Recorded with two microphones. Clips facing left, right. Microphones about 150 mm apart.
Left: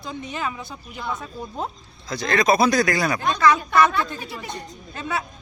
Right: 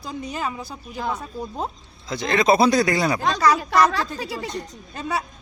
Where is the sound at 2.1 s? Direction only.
20° right (ahead or behind).